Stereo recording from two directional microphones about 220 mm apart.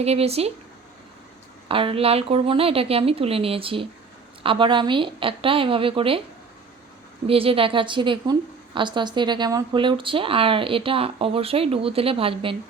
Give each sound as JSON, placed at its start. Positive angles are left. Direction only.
{"t": 0.0, "sound": "a woman's voice", "side_deg": -30}
{"t": 1.6, "sound": "a woman's voice", "side_deg": -25}
{"t": 7.3, "sound": "a woman's voice", "side_deg": -25}